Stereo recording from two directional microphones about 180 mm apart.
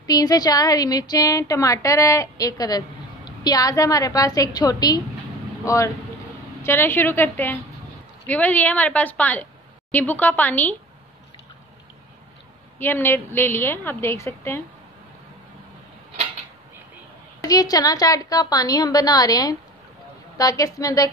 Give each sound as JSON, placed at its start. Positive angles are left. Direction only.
{"t": 0.0, "sound": "a woman's voice", "side_deg": 20}
{"t": 12.7, "sound": "a woman's voice", "side_deg": 10}
{"t": 17.4, "sound": "a woman's voice", "side_deg": 20}